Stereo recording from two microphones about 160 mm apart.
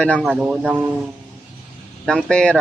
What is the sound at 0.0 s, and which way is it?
Speech, 5° left (ahead or behind).